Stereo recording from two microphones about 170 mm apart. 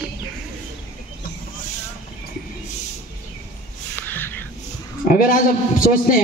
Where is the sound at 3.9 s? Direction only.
10° left (ahead or behind).